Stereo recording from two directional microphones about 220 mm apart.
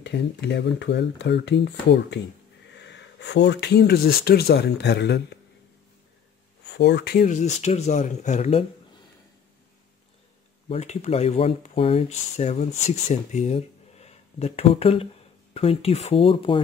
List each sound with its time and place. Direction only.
0.0 s speech: 50° left (ahead or behind)
6.6 s speech: 50° left (ahead or behind); by 8.6 s 30° left (ahead or behind)
10.7 s speech: 30° left (ahead or behind)